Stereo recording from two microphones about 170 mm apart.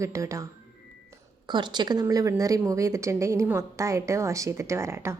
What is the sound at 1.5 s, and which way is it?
A woman's voice, 25° right (ahead or behind).